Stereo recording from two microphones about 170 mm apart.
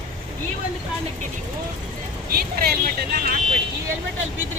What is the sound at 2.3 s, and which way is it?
Vehicle, 60° right (ahead or behind).